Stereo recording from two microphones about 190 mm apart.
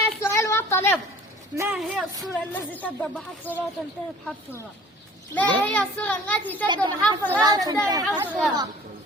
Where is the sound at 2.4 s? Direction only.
10° left (ahead or behind).